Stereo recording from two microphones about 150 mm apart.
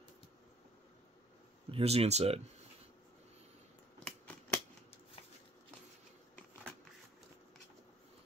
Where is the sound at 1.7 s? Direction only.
40° right (ahead or behind).